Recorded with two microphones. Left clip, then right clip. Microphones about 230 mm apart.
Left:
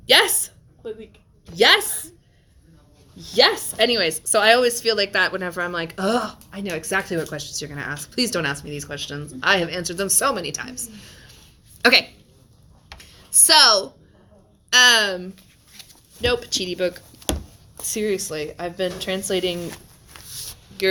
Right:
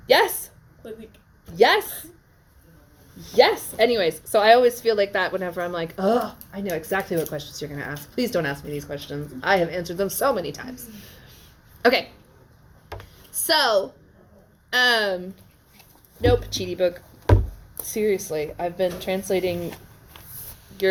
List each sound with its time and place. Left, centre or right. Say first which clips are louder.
0.1 s speech: left 2 dB; left
1.5 s speech: left 2 dB; left
3.2 s speech: even; left
13.4 s speech: left 5 dB; left
15.8 s a sound: right 1 dB; left
17.8 s speech: right 1 dB; left